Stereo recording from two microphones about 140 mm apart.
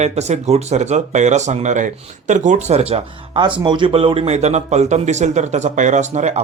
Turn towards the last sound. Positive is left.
turn(degrees=-50)  # may be behind; listen again after turning